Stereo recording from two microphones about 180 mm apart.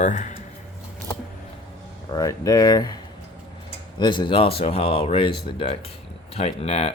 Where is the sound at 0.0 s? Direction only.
40° left (ahead or behind).